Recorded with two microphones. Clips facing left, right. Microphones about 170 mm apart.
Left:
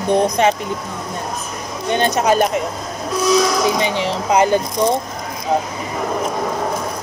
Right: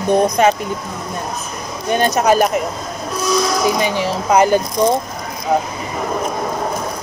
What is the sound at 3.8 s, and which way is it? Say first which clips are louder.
Speech: right 1 dB; 20° left (ahead or behind).